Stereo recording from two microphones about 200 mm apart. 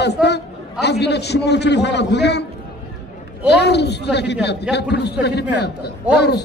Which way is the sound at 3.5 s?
55° left (ahead or behind).